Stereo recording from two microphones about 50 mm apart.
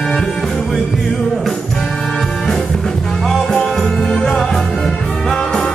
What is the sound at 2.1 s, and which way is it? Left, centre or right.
Music, centre.